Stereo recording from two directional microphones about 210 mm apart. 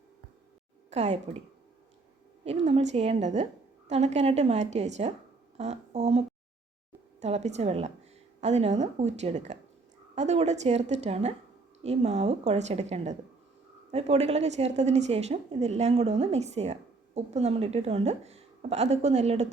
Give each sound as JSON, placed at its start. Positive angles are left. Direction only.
{"t": 0.9, "sound": "a woman's voice", "side_deg": -30}
{"t": 2.4, "sound": "a woman's voice", "side_deg": -30}